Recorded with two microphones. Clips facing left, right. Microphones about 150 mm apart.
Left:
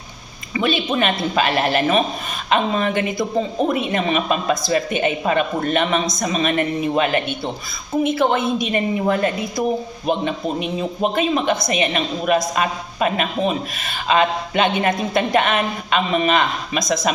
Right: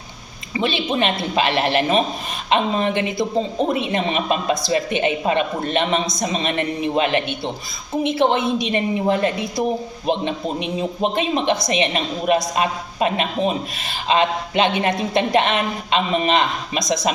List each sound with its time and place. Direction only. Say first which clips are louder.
0.5 s a sound: left 1 dB; 30° right (ahead or behind)
0.9 s a woman's voice: left 1 dB; 30° right (ahead or behind)
11.1 s a woman's voice: left 1 dB; 30° right (ahead or behind)